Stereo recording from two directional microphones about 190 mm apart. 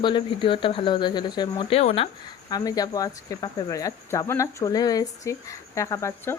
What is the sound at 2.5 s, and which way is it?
Speech, 20° left (ahead or behind).